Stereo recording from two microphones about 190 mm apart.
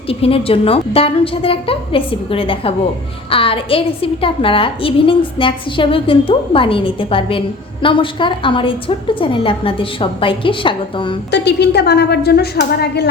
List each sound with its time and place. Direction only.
0.1 s a woman's voice: 30° left (ahead or behind)
11.3 s a woman's voice: 65° left (ahead or behind)